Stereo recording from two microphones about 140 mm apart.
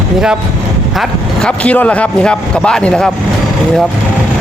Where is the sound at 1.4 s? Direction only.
10° left (ahead or behind).